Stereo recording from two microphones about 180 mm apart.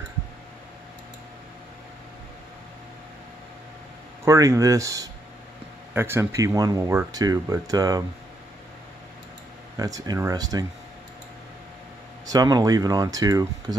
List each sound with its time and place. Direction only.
4.2 s speech: 15° right (ahead or behind)
9.8 s speech: 20° right (ahead or behind)
12.3 s speech: 20° right (ahead or behind)